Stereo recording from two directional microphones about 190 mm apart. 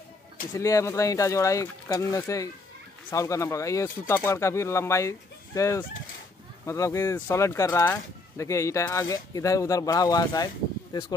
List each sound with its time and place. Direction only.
0.6 s speech: 15° left (ahead or behind)